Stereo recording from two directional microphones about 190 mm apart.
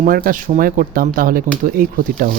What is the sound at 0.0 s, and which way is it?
Speech, 45° right (ahead or behind).